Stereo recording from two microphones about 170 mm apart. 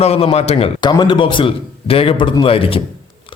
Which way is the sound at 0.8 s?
25° left (ahead or behind).